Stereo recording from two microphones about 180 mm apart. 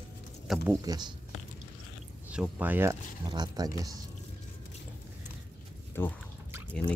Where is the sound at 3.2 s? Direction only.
25° right (ahead or behind).